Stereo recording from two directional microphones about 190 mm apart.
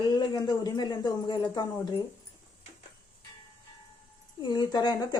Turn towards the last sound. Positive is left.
turn(degrees=20)  # may be behind; listen again after turning